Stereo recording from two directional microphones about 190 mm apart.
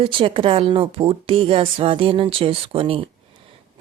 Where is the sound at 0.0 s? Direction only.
25° right (ahead or behind).